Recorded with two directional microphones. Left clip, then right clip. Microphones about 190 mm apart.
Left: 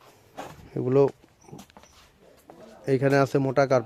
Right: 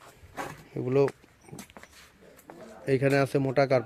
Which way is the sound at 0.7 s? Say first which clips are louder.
Left 4 dB; 20° left (ahead or behind).